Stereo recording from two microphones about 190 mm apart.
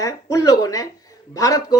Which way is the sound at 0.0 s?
15° left (ahead or behind).